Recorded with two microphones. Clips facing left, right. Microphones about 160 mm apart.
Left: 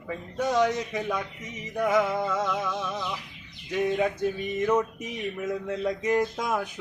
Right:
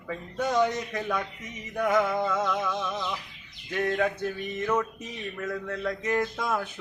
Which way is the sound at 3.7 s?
10° left (ahead or behind).